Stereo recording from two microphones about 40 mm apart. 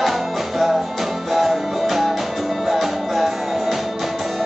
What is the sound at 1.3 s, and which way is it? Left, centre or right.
Music, centre.